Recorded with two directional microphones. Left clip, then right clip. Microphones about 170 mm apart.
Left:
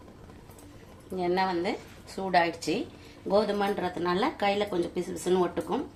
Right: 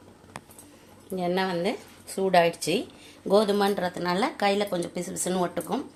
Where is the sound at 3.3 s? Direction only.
50° right (ahead or behind).